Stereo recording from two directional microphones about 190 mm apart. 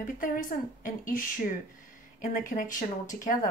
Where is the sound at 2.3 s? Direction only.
45° left (ahead or behind).